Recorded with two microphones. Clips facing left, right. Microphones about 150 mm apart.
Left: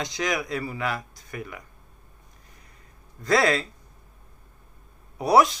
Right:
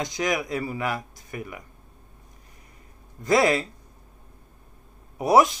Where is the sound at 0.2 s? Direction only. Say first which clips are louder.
Right 1 dB; 20° right (ahead or behind).